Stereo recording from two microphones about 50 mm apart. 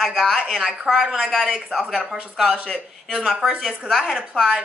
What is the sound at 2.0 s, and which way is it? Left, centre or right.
A woman's voice, centre.